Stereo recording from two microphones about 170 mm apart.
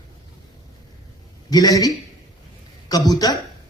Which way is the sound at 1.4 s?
20° left (ahead or behind).